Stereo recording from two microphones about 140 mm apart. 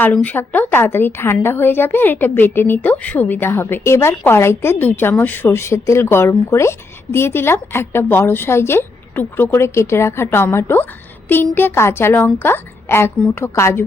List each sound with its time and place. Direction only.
0.0 s a woman's voice: 10° left (ahead or behind)